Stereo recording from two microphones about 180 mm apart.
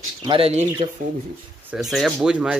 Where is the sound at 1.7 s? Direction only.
Centre (ahead or behind).